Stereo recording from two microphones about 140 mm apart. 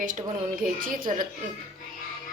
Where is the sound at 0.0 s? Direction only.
70° right (ahead or behind).